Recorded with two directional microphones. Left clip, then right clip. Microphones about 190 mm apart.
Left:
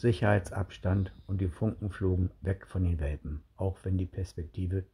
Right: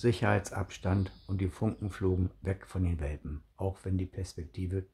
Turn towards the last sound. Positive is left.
turn(degrees=15)  # may be behind; listen again after turning